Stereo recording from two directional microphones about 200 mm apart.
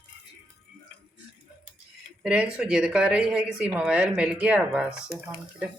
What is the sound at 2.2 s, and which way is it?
Speech, 5° right (ahead or behind).